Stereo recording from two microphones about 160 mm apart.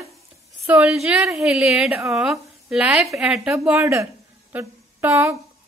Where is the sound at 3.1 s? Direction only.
5° right (ahead or behind).